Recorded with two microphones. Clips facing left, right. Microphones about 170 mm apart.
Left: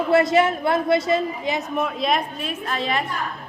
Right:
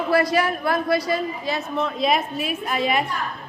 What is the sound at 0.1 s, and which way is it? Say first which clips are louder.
A woman's voice: left 3 dB; 25° left (ahead or behind).